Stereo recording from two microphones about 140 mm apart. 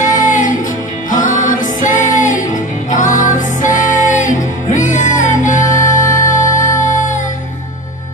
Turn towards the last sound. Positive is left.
turn(degrees=60)  # may be behind; listen again after turning